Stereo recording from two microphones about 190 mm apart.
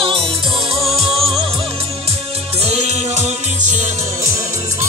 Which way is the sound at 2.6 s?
35° right (ahead or behind).